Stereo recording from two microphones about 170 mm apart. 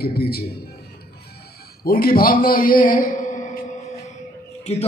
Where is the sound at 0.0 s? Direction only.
65° left (ahead or behind).